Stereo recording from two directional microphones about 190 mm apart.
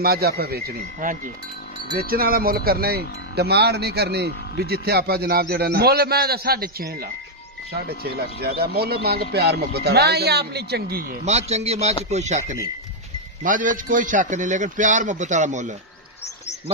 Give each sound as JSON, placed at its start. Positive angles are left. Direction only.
{"t": 0.0, "sound": "speech", "side_deg": -55}
{"t": 7.7, "sound": "speech", "side_deg": -55}
{"t": 11.2, "sound": "a man's voice", "side_deg": -35}